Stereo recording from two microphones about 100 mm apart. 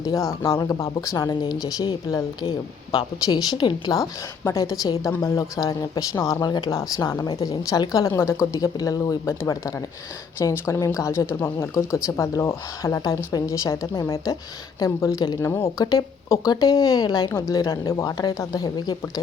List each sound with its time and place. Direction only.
0.0 s speech: 35° left (ahead or behind)
3.6 s speech: 50° left (ahead or behind)
4.4 s speech: 35° left (ahead or behind)
15.4 s speech: 25° left (ahead or behind)